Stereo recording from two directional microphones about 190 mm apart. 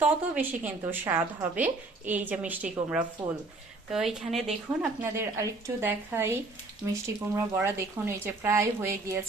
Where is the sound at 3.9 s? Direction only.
Centre (ahead or behind).